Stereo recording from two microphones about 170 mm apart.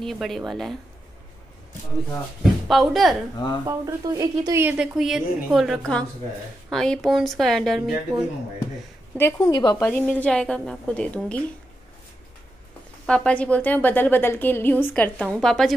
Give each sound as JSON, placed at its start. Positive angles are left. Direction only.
{"t": 0.0, "sound": "a woman's voice", "side_deg": 0}
{"t": 2.7, "sound": "a woman's voice", "side_deg": 0}
{"t": 3.3, "sound": "a woman's voice", "side_deg": 25}
{"t": 3.6, "sound": "a woman's voice", "side_deg": -20}
{"t": 9.1, "sound": "a woman's voice", "side_deg": 15}
{"t": 9.8, "sound": "a woman's voice", "side_deg": 5}
{"t": 13.0, "sound": "a woman's voice", "side_deg": 5}